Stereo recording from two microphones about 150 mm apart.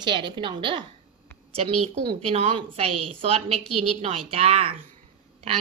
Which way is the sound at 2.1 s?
40° right (ahead or behind).